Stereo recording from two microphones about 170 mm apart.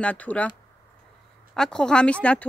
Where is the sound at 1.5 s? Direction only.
5° left (ahead or behind).